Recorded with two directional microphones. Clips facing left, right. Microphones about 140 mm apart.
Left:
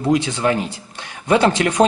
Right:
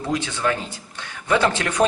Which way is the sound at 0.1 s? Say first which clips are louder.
Left 5 dB; 20° left (ahead or behind).